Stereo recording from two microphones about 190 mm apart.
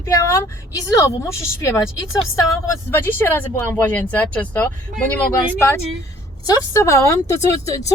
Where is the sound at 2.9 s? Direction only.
10° left (ahead or behind).